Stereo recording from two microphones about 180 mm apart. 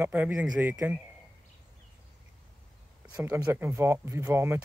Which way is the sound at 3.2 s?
15° right (ahead or behind).